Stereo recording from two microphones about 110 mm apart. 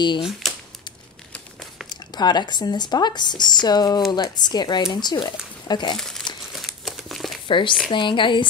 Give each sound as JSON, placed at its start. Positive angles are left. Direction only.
{"t": 0.2, "sound": "speech", "side_deg": 0}
{"t": 1.9, "sound": "speech", "side_deg": 40}
{"t": 5.9, "sound": "crumpling", "side_deg": 5}
{"t": 7.4, "sound": "speech", "side_deg": 50}